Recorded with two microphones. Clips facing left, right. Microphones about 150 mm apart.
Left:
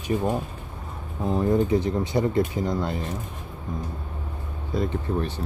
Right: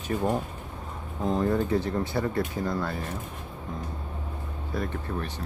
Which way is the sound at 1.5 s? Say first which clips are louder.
Left 4 dB; 15° left (ahead or behind).